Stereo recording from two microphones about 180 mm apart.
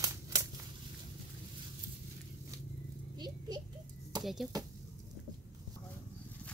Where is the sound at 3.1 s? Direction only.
25° right (ahead or behind).